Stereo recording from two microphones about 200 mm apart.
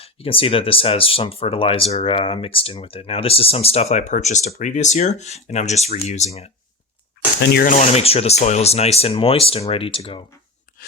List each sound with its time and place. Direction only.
0.0 s speech: 30° left (ahead or behind)
7.4 s speech: 55° left (ahead or behind)
7.7 s speech: 35° left (ahead or behind)